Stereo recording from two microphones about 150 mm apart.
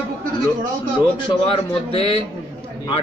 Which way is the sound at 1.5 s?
40° left (ahead or behind).